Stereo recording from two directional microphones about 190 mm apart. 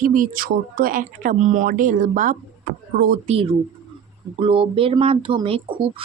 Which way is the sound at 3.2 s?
30° right (ahead or behind).